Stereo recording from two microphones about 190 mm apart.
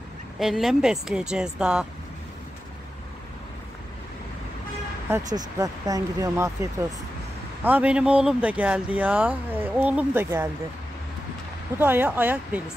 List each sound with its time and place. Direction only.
0.4 s speech: centre (ahead or behind)
5.1 s speech: 20° right (ahead or behind)
11.8 s speech: 10° right (ahead or behind)